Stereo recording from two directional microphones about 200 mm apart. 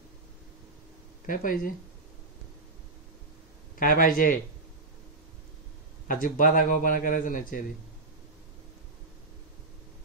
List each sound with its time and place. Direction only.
1.2 s a man's voice: 45° left (ahead or behind)
3.8 s a man's voice: 45° left (ahead or behind)
6.0 s a man's voice: 45° left (ahead or behind)